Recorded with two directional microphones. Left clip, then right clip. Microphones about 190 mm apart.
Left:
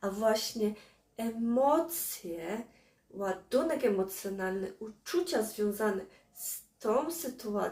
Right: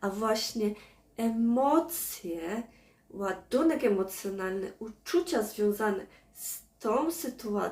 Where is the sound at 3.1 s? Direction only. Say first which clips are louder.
Right 1 dB; 15° right (ahead or behind).